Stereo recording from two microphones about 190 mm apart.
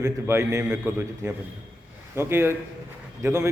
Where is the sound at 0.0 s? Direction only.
15° right (ahead or behind).